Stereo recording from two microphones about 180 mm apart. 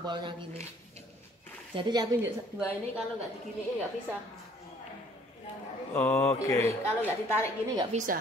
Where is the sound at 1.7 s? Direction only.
25° right (ahead or behind).